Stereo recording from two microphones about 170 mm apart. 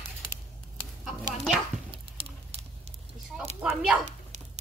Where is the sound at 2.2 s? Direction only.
30° right (ahead or behind).